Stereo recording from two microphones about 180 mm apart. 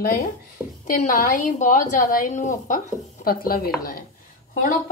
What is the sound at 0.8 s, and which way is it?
A woman's voice, 45° left (ahead or behind).